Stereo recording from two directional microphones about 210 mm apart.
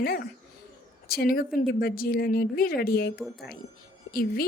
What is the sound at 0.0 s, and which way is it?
A woman's voice, 45° left (ahead or behind).